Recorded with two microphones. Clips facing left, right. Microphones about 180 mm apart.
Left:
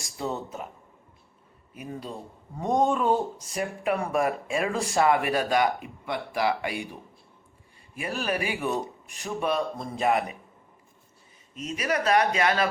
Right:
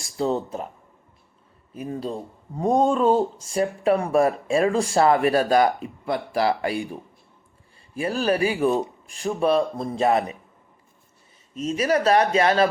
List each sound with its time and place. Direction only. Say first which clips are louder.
0.2 s speech: right 7 dB; 30° right (ahead or behind)
1.7 s speech: right 7 dB; 30° right (ahead or behind)
7.9 s speech: right 7 dB; 30° right (ahead or behind)
11.5 s speech: right 7 dB; 30° right (ahead or behind)